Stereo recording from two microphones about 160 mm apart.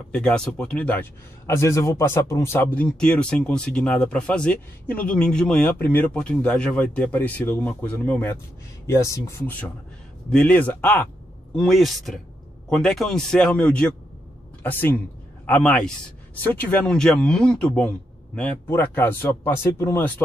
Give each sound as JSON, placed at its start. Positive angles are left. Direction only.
{"t": 0.1, "sound": "a man's voice", "side_deg": 5}